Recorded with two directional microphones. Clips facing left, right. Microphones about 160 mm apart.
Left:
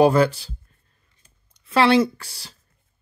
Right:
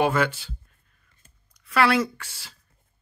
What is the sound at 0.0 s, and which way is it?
Speech, 35° left (ahead or behind).